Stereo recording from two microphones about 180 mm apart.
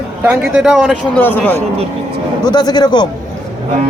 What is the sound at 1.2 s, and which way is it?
Speech, 10° left (ahead or behind).